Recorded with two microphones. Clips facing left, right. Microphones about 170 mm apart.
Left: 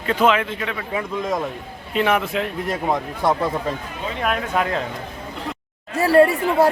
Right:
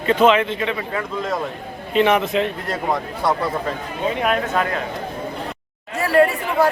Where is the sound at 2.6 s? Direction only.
15° left (ahead or behind).